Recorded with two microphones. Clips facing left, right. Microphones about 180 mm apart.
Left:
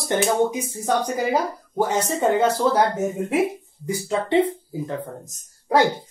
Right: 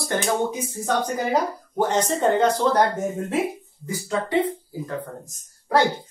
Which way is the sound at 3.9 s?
20° left (ahead or behind).